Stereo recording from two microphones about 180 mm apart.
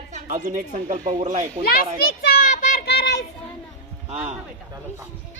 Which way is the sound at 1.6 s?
55° left (ahead or behind).